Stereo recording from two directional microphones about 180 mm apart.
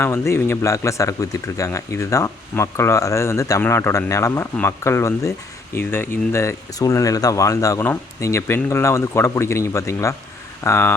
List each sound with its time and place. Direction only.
0.0 s speech: 15° left (ahead or behind)